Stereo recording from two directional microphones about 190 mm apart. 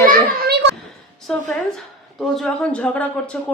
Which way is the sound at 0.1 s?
55° right (ahead or behind).